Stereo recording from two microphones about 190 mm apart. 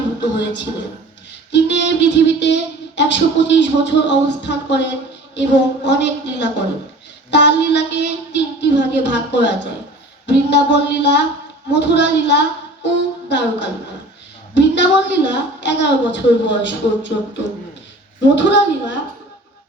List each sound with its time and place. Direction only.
0.2 s a man's voice: 65° left (ahead or behind)
18.3 s speech: 70° left (ahead or behind)